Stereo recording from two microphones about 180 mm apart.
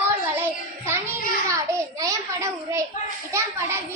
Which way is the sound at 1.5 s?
20° right (ahead or behind).